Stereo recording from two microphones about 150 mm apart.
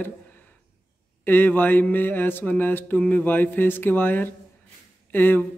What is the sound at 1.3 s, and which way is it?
Speech, 15° left (ahead or behind).